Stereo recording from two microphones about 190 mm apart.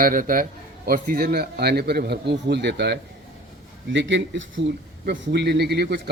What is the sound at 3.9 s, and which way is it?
Speech, 75° right (ahead or behind).